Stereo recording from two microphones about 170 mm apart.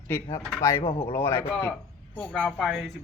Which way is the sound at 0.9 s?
15° left (ahead or behind).